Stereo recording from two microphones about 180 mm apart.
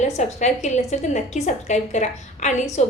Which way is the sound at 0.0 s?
40° left (ahead or behind).